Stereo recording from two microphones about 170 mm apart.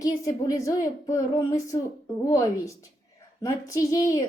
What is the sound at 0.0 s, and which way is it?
A woman's voice, 20° left (ahead or behind).